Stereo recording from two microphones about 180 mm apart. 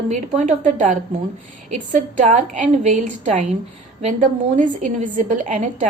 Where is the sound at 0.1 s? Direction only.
40° right (ahead or behind).